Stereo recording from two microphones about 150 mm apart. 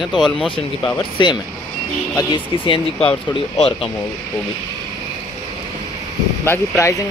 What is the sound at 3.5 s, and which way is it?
Speech, 45° left (ahead or behind).